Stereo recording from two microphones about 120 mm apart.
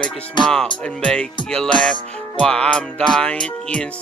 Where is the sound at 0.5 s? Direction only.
5° left (ahead or behind).